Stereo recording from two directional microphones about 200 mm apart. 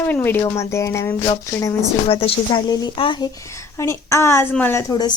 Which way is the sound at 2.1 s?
30° left (ahead or behind).